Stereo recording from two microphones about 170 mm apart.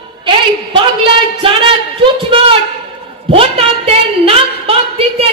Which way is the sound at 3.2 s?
35° right (ahead or behind).